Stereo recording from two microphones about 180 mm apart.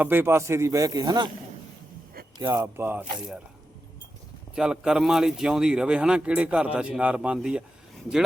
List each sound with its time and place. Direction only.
0.0 s speech: 10° right (ahead or behind)
2.5 s speech: 10° right (ahead or behind)
4.5 s speech: 5° right (ahead or behind)